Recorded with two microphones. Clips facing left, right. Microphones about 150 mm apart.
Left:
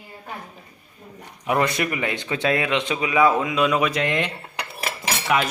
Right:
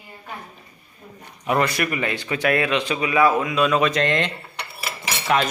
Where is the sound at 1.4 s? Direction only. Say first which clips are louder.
Even; 15° left (ahead or behind).